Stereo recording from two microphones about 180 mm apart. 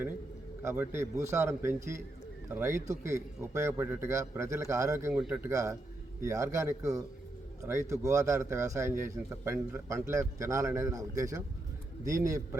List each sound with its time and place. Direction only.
0.6 s speech: 15° right (ahead or behind)
5.5 s speech: 15° right (ahead or behind)